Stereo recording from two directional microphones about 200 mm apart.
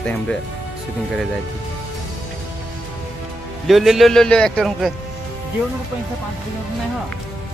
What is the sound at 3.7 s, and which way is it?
Speech, centre (ahead or behind).